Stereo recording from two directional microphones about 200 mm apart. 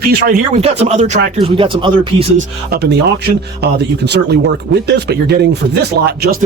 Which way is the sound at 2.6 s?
55° right (ahead or behind).